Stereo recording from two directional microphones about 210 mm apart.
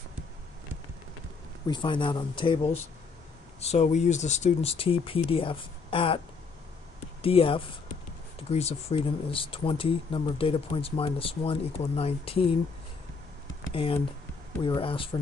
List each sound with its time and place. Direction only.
1.7 s speech: 25° left (ahead or behind)
14.6 s speech: 25° left (ahead or behind)